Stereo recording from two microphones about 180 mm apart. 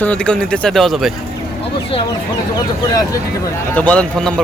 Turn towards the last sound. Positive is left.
turn(degrees=5)  # may be behind; listen again after turning